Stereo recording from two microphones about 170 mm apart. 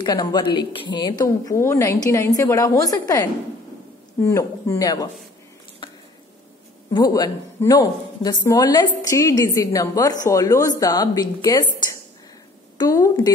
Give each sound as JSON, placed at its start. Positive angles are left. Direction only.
{"t": 0.0, "sound": "a woman's voice", "side_deg": 25}
{"t": 5.8, "sound": "squish", "side_deg": 30}
{"t": 6.9, "sound": "a woman's voice", "side_deg": 20}